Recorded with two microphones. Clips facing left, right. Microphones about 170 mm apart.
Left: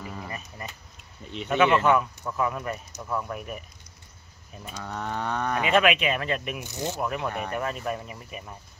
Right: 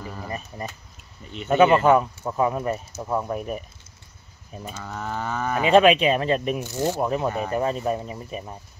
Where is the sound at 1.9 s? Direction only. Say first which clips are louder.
Right 4 dB; 35° right (ahead or behind).